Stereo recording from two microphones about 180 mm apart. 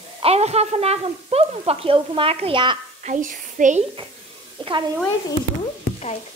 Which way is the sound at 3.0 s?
45° right (ahead or behind).